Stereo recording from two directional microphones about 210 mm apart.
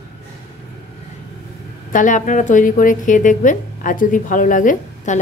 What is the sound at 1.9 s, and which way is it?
A woman's voice, 40° left (ahead or behind).